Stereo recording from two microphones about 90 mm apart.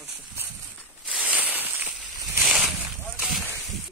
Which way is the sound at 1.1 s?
15° right (ahead or behind).